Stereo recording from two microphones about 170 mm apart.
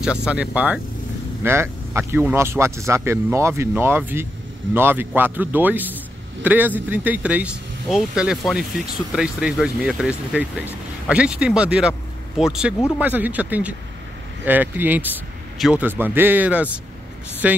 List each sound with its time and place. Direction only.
0.0 s speech: 5° right (ahead or behind)